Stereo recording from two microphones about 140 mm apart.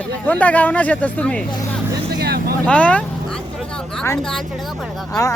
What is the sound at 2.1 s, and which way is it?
Vehicle, 90° right.